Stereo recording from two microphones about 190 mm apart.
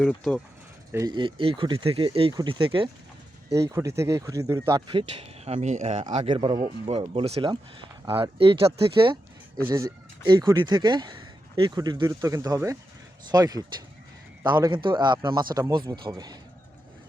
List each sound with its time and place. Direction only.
0.0 s speech: 5° left (ahead or behind)
0.9 s speech: 20° right (ahead or behind)
3.7 s speech: 15° right (ahead or behind)
5.5 s speech: 40° right (ahead or behind); by 16.4 s 20° right (ahead or behind)